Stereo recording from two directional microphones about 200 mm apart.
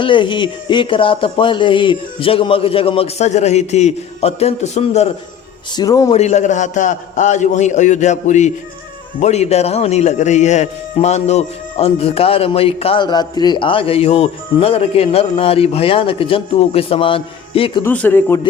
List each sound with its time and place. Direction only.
0.0 s a man's voice: 25° left (ahead or behind)
5.7 s a man's voice: 20° left (ahead or behind)
6.1 s a man's voice: 35° left (ahead or behind)
17.8 s a man's voice: 10° left (ahead or behind)